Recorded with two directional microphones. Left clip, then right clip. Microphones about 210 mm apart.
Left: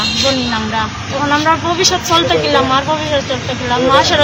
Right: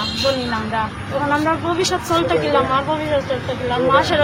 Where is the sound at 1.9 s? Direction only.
20° right (ahead or behind).